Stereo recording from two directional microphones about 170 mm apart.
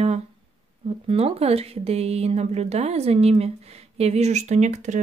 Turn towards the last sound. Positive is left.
turn(degrees=-45)  # may be behind; listen again after turning